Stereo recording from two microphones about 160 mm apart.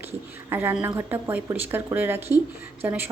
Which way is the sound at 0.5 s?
15° right (ahead or behind).